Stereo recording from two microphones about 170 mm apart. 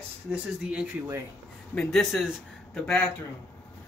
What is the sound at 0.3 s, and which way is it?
Speech, 5° right (ahead or behind).